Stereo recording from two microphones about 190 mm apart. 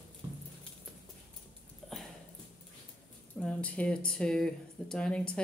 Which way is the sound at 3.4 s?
5° left (ahead or behind).